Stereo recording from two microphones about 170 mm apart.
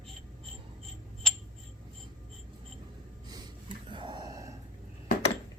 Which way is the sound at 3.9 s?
30° right (ahead or behind).